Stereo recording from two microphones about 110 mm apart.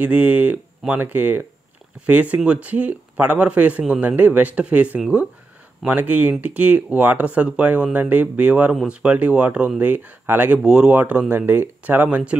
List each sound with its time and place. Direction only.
0.0 s speech: 15° right (ahead or behind)